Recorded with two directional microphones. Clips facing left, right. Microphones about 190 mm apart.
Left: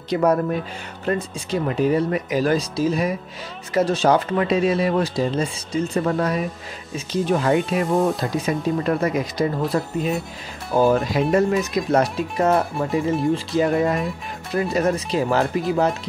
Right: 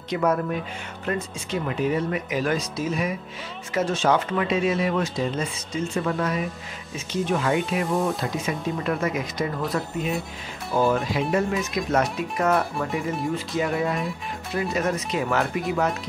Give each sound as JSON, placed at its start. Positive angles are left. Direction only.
{"t": 0.1, "sound": "speech", "side_deg": 35}
{"t": 13.6, "sound": "speech", "side_deg": 45}